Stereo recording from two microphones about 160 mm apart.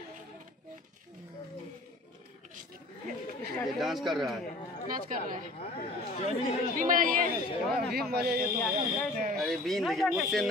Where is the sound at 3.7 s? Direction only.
Centre (ahead or behind).